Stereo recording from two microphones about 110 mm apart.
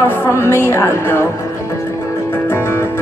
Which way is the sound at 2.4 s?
20° left (ahead or behind).